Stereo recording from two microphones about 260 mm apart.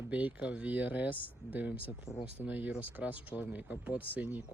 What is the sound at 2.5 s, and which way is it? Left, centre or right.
Speech, centre.